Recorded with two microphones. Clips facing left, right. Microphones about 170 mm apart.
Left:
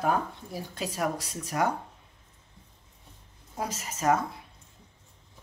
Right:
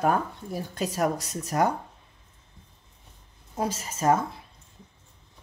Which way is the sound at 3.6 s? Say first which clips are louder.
Right 4 dB; 30° right (ahead or behind).